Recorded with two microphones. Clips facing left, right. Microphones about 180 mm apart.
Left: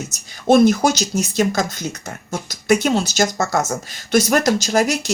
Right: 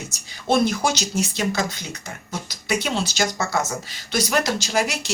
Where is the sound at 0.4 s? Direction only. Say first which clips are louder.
Left 7 dB; 45° left (ahead or behind).